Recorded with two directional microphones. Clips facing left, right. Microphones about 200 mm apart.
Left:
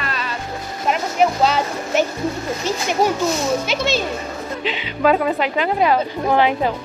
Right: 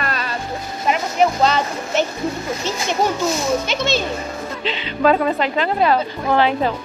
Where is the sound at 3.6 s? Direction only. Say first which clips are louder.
Even; 10° left (ahead or behind).